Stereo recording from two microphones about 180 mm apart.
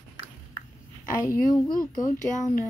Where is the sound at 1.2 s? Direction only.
20° left (ahead or behind).